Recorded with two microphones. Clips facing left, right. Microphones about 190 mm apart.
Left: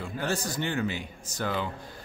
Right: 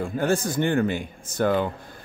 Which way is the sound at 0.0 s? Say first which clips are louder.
Right 8 dB; 50° right (ahead or behind).